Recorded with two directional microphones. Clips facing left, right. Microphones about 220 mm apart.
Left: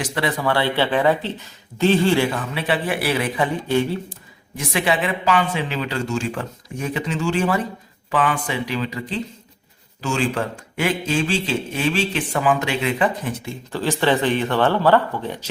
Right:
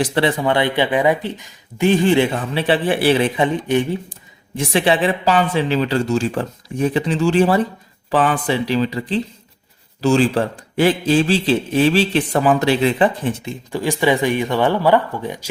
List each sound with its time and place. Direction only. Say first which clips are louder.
0.0 s a man's voice: right 5 dB; 30° right (ahead or behind)
4.5 s a man's voice: right 5 dB; 30° right (ahead or behind); by 15.4 s 15° right (ahead or behind)